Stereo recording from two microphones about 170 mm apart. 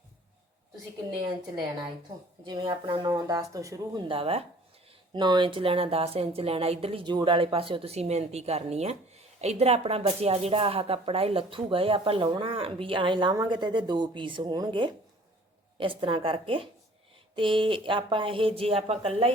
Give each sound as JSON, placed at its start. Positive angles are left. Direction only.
{"t": 1.1, "sound": "speech", "side_deg": -30}
{"t": 4.1, "sound": "a woman's voice", "side_deg": -35}